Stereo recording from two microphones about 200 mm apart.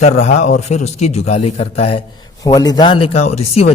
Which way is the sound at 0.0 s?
35° left (ahead or behind).